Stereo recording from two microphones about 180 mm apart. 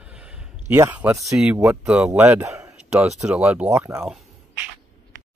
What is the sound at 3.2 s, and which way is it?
Speech, 5° right (ahead or behind).